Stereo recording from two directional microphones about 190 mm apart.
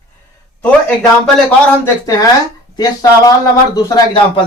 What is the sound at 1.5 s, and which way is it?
A man's voice, 15° left (ahead or behind).